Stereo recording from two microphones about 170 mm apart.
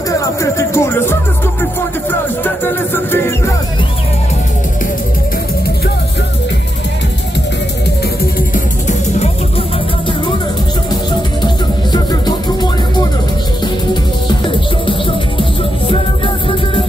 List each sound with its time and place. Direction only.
0.2 s music: 20° left (ahead or behind)
2.4 s music: 10° left (ahead or behind)
8.4 s music: 45° left (ahead or behind)
11.4 s music: 25° left (ahead or behind)
14.9 s music: 30° left (ahead or behind)